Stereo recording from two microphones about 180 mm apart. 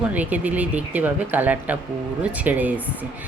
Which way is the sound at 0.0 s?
10° right (ahead or behind).